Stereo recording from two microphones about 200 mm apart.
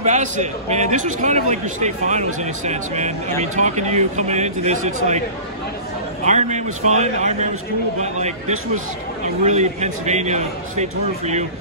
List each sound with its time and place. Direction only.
0.0 s a man's voice: 35° right (ahead or behind)
6.2 s a man's voice: 35° right (ahead or behind)